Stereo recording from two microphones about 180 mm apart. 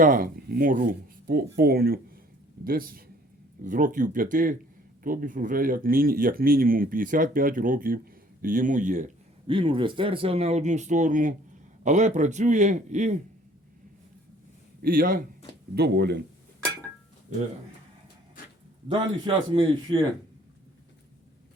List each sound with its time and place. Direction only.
0.0 s speech: 50° right (ahead or behind)
9.5 s speech: 30° right (ahead or behind)
14.8 s a man's voice: 55° right (ahead or behind)
15.7 s speech: 65° right (ahead or behind)
18.9 s a man's voice: 25° right (ahead or behind)